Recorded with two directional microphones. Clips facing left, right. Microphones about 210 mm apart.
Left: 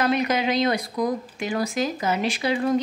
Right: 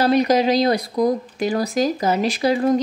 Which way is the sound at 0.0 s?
35° right (ahead or behind).